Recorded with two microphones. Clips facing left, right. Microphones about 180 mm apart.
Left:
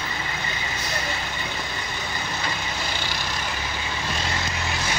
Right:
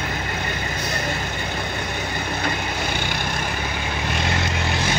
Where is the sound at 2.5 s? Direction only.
55° right (ahead or behind).